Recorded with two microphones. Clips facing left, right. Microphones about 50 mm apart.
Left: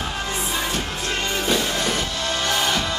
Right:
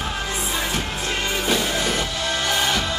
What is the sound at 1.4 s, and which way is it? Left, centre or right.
Music, centre.